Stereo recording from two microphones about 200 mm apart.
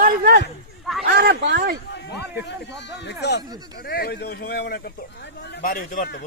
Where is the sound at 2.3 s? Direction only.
60° left (ahead or behind).